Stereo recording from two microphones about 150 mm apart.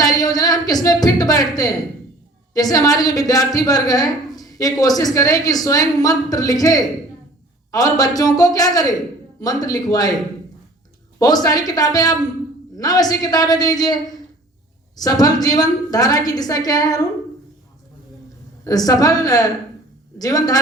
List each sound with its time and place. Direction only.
0.0 s a woman's voice: 25° left (ahead or behind)
11.2 s a woman's voice: 25° left (ahead or behind)
18.6 s a woman's voice: 25° left (ahead or behind)